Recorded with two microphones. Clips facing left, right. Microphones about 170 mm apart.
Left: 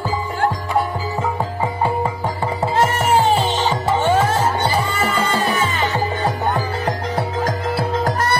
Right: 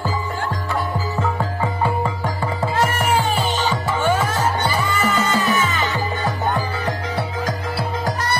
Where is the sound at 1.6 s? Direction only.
20° left (ahead or behind).